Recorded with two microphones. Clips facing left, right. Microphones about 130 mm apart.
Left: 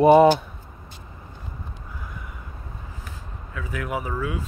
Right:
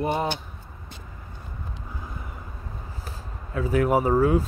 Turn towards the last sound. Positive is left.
turn(degrees=-40)  # may be behind; listen again after turning